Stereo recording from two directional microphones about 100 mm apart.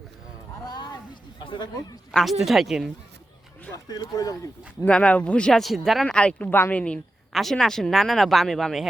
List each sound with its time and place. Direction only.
1.5 s speech: 45° left (ahead or behind)
2.4 s speech: 5° right (ahead or behind)
3.8 s speech: 45° left (ahead or behind)
4.9 s speech: 10° left (ahead or behind)
7.3 s speech: centre (ahead or behind)